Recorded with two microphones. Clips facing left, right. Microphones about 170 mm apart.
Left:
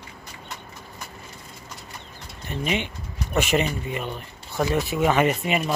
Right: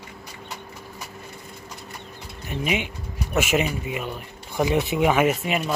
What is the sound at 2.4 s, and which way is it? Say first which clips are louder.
Speech: right 1 dB; 10° right (ahead or behind).